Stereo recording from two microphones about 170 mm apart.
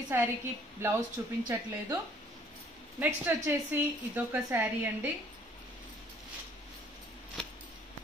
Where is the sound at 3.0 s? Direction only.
15° right (ahead or behind).